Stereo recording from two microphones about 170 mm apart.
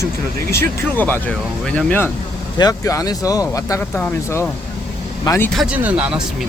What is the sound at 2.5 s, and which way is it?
Speech, 20° left (ahead or behind).